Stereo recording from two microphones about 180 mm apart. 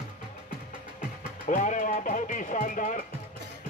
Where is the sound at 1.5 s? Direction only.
45° left (ahead or behind).